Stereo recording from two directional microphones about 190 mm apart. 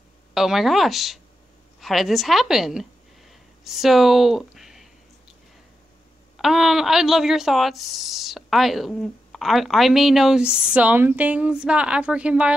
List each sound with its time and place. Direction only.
0.3 s a woman's voice: centre (ahead or behind)
6.3 s speech: centre (ahead or behind)